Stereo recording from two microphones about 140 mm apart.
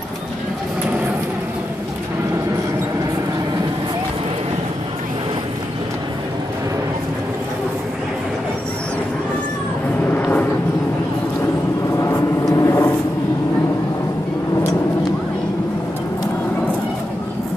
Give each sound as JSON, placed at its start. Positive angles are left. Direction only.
{"t": 10.1, "sound": "vehicle", "side_deg": 15}
{"t": 12.0, "sound": "vehicle", "side_deg": 20}